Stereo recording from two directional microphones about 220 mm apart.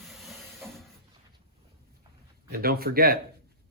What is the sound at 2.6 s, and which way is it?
Speech, 45° right (ahead or behind).